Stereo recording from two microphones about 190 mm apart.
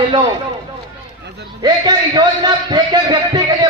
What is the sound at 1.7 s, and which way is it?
A man's voice, 25° right (ahead or behind).